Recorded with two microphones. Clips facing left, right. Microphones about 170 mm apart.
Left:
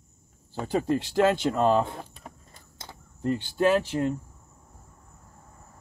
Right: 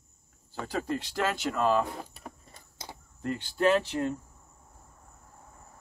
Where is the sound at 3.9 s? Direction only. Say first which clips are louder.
Left 3 dB; 25° left (ahead or behind).